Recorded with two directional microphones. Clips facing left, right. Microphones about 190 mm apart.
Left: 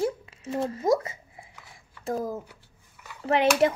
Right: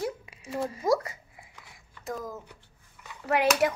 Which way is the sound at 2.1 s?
30° left (ahead or behind).